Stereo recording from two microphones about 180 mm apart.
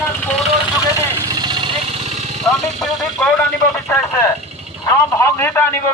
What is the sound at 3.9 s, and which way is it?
A man's voice, 15° left (ahead or behind).